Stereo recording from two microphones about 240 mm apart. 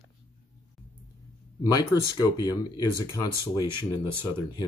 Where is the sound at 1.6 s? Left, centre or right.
Centre.